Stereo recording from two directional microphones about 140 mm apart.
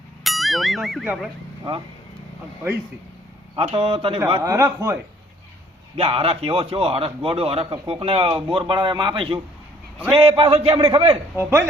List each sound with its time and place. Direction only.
0.3 s speech: centre (ahead or behind)
3.5 s a man's voice: 40° right (ahead or behind)
4.4 s speech: 20° right (ahead or behind)
6.0 s a man's voice: 40° right (ahead or behind)
11.3 s speech: 20° right (ahead or behind)